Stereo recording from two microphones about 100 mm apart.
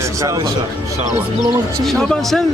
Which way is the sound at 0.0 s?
35° right (ahead or behind).